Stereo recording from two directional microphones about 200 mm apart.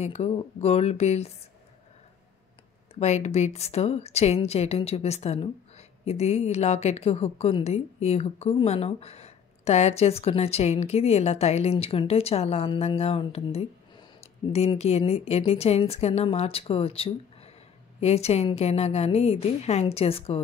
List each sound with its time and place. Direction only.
0.0 s a woman's voice: 30° left (ahead or behind)
2.9 s a woman's voice: 35° left (ahead or behind)